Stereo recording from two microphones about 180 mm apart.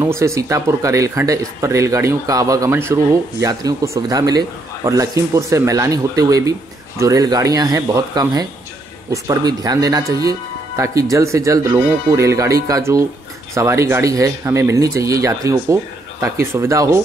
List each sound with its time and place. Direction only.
0.0 s a man's voice: 15° right (ahead or behind)